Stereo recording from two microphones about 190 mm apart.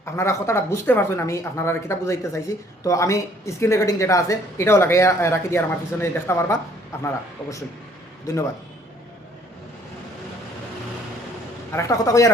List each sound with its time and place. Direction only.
0.0 s speech: 15° left (ahead or behind)
11.7 s speech: 15° left (ahead or behind)